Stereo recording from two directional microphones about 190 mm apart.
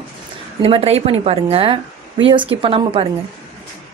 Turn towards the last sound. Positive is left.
turn(degrees=-30)  # may be behind; listen again after turning